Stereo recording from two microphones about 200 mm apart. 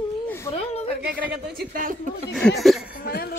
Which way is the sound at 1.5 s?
50° right (ahead or behind).